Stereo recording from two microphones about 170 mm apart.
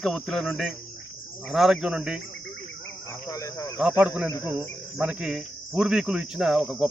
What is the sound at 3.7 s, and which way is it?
A man's voice, 5° right (ahead or behind).